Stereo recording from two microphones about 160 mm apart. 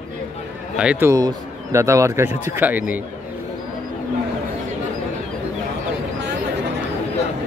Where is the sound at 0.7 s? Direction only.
10° right (ahead or behind).